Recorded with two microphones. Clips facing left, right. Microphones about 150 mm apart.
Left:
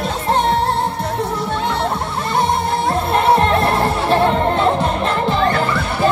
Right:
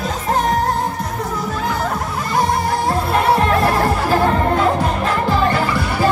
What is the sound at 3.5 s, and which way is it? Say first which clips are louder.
Music: even; 25° left (ahead or behind).